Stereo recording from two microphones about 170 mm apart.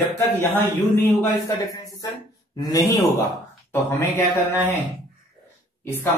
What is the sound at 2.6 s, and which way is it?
A man's voice, 20° left (ahead or behind).